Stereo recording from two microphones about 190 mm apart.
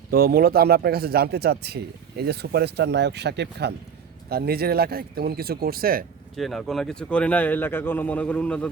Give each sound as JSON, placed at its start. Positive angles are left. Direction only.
{"t": 0.1, "sound": "speech", "side_deg": -55}
{"t": 6.3, "sound": "a man's voice", "side_deg": 0}